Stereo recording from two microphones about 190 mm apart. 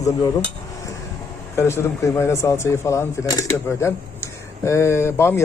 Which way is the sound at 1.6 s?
15° left (ahead or behind).